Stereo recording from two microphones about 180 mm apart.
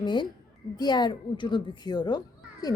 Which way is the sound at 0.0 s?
25° left (ahead or behind).